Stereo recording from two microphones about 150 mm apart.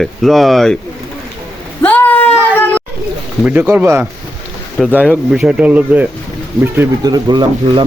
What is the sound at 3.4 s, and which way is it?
Speech, 10° right (ahead or behind).